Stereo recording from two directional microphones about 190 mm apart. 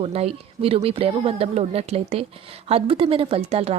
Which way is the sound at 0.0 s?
35° right (ahead or behind).